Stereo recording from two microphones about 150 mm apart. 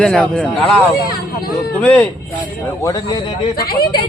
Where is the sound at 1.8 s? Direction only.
5° left (ahead or behind).